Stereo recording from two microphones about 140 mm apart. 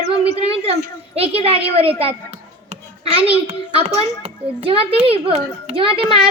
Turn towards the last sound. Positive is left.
turn(degrees=-40)  # may be behind; listen again after turning